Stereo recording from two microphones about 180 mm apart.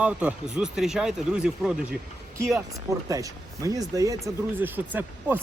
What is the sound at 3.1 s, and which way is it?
Speech, 20° right (ahead or behind).